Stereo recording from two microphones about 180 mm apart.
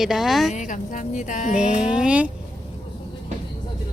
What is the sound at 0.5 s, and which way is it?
Speech, 45° left (ahead or behind).